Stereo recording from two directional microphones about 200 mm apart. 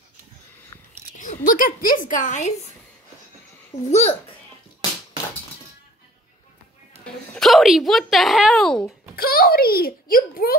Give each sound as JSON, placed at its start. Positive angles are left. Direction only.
{"t": 1.1, "sound": "speech", "side_deg": 40}
{"t": 3.9, "sound": "a child's voice", "side_deg": 30}
{"t": 7.3, "sound": "speech", "side_deg": 0}
{"t": 9.1, "sound": "a child's voice", "side_deg": 45}